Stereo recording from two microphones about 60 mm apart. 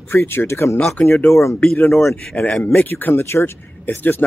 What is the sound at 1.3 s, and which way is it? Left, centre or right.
Speech, left.